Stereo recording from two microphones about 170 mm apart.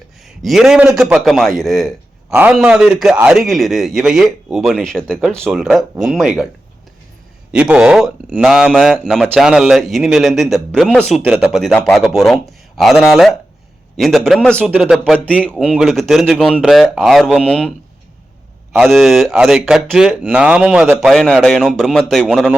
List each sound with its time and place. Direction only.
0.3 s speech: centre (ahead or behind)
7.5 s speech: 5° right (ahead or behind)
18.8 s speech: centre (ahead or behind)
21.1 s speech: 5° left (ahead or behind)